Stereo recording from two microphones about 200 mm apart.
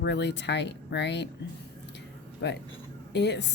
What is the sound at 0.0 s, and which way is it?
A woman's voice, 60° left (ahead or behind).